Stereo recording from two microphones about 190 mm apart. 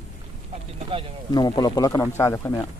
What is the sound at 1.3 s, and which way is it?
Speech, 20° left (ahead or behind).